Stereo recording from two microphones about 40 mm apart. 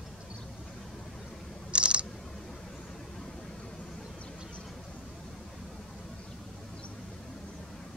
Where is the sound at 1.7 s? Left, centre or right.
Right.